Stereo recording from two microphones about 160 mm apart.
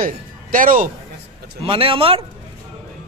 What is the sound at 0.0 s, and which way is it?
Speech, 60° right (ahead or behind).